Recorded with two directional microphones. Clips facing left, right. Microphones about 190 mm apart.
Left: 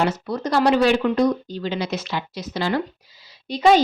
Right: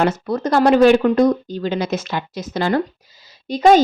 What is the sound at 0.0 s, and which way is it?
Speech, 50° right (ahead or behind).